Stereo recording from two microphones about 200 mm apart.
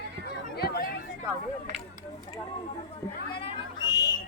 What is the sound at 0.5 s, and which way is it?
Chatter, 50° left (ahead or behind).